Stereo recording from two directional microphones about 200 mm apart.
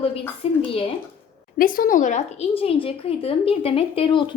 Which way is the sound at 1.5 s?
45° left (ahead or behind).